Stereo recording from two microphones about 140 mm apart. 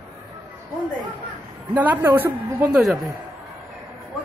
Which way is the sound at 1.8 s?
15° right (ahead or behind).